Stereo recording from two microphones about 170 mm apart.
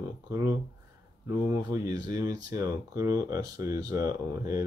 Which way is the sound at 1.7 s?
20° right (ahead or behind).